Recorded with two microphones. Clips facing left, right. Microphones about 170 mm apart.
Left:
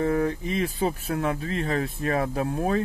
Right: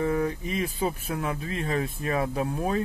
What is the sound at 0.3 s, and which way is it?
Speech, 35° left (ahead or behind).